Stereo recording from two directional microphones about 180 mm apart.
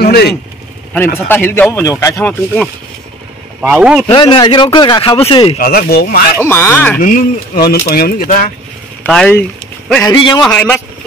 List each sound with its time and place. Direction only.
0.0 s speech: 60° left (ahead or behind)
0.9 s speech: 10° left (ahead or behind)
3.6 s a man's voice: 5° right (ahead or behind)
4.1 s speech: 25° left (ahead or behind)
5.6 s speech: 55° left (ahead or behind)
6.4 s speech: 15° left (ahead or behind)
7.0 s speech: 50° left (ahead or behind)
9.0 s speech: 5° left (ahead or behind)
10.0 s speech: 25° left (ahead or behind)
10.4 s speech: 10° left (ahead or behind)